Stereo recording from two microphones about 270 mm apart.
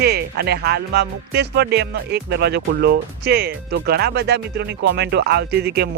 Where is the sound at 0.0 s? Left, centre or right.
Right.